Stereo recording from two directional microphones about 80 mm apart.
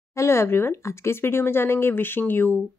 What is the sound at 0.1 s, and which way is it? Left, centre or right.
Speech, left.